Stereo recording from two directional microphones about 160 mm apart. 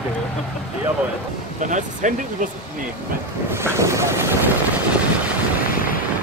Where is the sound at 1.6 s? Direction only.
50° right (ahead or behind).